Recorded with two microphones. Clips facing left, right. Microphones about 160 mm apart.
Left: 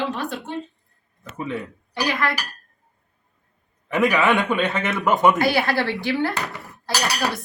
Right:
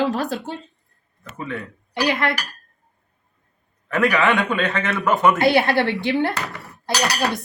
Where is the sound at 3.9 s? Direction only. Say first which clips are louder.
Even; 15° left (ahead or behind).